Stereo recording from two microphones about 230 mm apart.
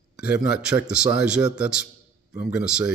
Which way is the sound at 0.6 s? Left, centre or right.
Centre.